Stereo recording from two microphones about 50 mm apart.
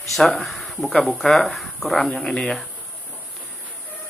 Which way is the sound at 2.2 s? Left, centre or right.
Centre.